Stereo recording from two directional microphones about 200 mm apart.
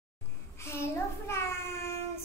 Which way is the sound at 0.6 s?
15° left (ahead or behind).